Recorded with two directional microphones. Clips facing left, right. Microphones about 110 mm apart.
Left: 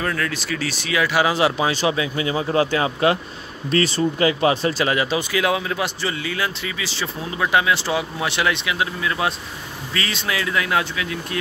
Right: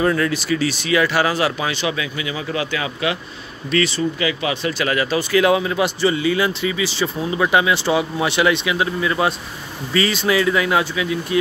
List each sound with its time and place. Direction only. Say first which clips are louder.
0.0 s speech: right 6 dB; 15° right (ahead or behind); by 1.1 s centre (ahead or behind)
1.1 s speech: even; 20° left (ahead or behind)
1.7 s speech: left 2 dB; 35° left (ahead or behind)
5.3 s speech: right 5 dB; centre (ahead or behind)